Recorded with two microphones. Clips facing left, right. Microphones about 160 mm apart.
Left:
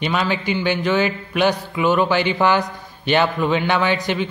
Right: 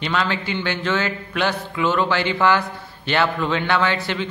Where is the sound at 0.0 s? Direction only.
15° left (ahead or behind).